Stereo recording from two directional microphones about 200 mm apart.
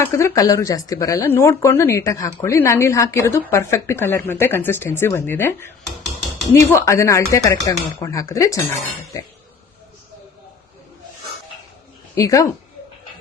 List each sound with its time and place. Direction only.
0.0 s speech: 15° left (ahead or behind)
12.1 s speech: 15° left (ahead or behind)